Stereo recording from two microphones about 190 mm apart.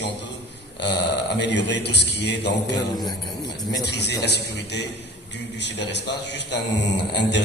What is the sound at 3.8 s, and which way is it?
A man's voice, 60° left (ahead or behind).